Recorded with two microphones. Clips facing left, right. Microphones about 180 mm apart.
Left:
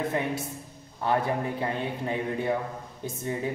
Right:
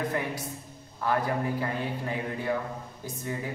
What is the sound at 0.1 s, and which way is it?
A woman's voice, 25° left (ahead or behind).